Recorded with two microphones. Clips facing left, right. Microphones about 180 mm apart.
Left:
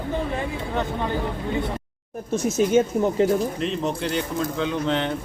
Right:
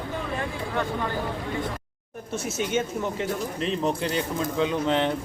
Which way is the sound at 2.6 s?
35° left (ahead or behind).